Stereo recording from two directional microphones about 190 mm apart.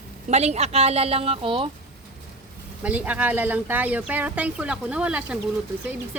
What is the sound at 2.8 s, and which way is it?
A woman's voice, 10° right (ahead or behind).